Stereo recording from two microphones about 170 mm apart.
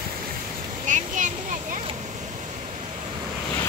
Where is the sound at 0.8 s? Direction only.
50° right (ahead or behind).